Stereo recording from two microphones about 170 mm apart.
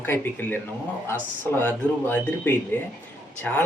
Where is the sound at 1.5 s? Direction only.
10° left (ahead or behind).